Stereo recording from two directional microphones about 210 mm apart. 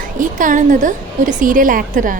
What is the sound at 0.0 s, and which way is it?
A woman's voice, 40° right (ahead or behind).